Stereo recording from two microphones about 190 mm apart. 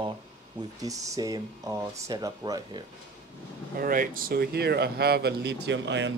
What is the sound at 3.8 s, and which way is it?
Speech, 45° right (ahead or behind).